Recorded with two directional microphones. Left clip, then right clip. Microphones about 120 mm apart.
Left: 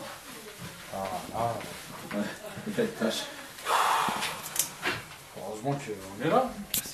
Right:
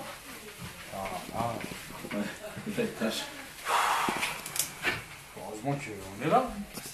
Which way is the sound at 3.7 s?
65° left (ahead or behind).